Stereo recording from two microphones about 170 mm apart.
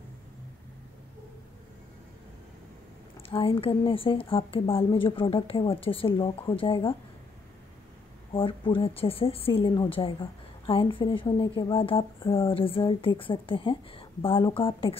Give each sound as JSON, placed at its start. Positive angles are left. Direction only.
{"t": 3.2, "sound": "a woman's voice", "side_deg": 35}
{"t": 8.3, "sound": "a woman's voice", "side_deg": 30}